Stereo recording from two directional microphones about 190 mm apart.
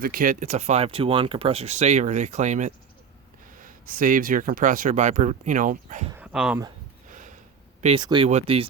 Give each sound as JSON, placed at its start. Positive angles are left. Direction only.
{"t": 0.0, "sound": "speech", "side_deg": -50}
{"t": 6.1, "sound": "speech", "side_deg": -5}
{"t": 7.1, "sound": "a sound", "side_deg": -40}
{"t": 7.8, "sound": "speech", "side_deg": -35}